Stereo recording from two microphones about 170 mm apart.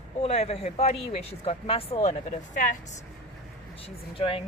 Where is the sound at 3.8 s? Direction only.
35° left (ahead or behind).